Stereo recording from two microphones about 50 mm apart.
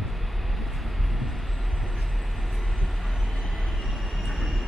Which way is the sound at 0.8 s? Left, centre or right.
Centre.